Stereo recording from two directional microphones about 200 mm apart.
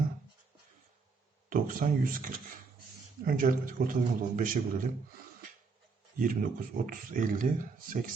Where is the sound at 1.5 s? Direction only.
45° right (ahead or behind).